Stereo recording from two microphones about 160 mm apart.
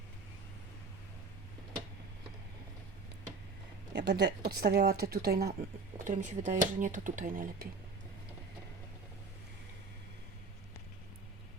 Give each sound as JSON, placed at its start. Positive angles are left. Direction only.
{"t": 3.9, "sound": "speech", "side_deg": -90}
{"t": 6.1, "sound": "speech", "side_deg": -50}